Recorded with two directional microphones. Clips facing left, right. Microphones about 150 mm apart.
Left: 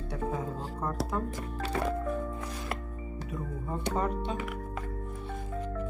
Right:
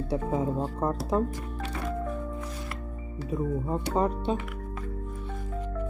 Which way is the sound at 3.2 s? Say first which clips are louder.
Right 10 dB; 30° right (ahead or behind).